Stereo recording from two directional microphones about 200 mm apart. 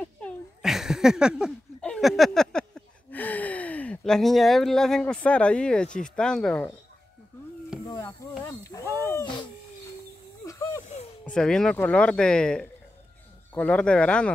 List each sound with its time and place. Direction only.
0.0 s cat: centre (ahead or behind)
6.0 s speech: 5° left (ahead or behind)
7.9 s speech: 20° left (ahead or behind)
8.8 s a sound: 15° right (ahead or behind)
9.1 s owl: 20° left (ahead or behind)
10.4 s a sound: 15° left (ahead or behind)
11.2 s speech: 5° left (ahead or behind)